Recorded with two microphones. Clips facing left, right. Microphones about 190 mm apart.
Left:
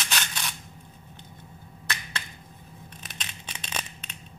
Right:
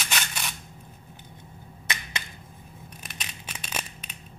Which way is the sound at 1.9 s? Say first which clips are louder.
Right 1 dB; 15° right (ahead or behind).